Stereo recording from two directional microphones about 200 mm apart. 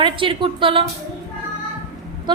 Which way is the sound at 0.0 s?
25° right (ahead or behind).